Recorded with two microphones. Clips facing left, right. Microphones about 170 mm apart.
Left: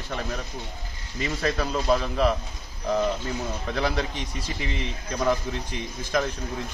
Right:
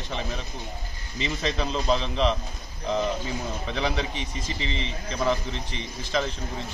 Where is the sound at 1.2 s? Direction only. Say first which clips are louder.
Left 2 dB; 20° right (ahead or behind).